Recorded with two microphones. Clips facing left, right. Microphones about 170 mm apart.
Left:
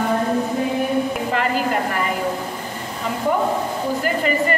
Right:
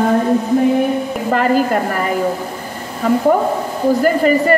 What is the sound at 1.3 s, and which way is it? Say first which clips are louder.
Speech: right 8 dB; 45° right (ahead or behind).